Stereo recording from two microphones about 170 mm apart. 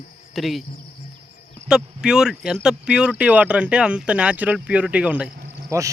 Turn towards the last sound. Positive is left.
turn(degrees=-15)  # may be behind; listen again after turning